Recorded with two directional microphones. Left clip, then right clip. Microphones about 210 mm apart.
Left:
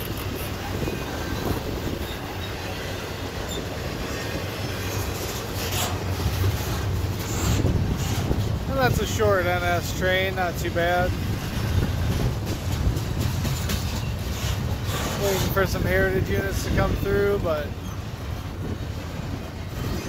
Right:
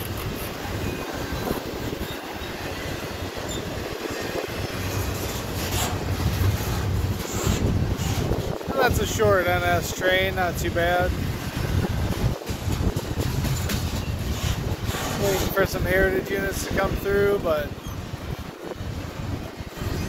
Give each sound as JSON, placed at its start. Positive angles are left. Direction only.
{"t": 5.6, "sound": "train", "side_deg": 50}
{"t": 8.7, "sound": "speech", "side_deg": 0}
{"t": 15.5, "sound": "speech", "side_deg": -5}